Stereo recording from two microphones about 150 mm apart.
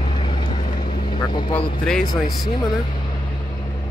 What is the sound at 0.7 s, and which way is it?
Vehicle, 75° left (ahead or behind).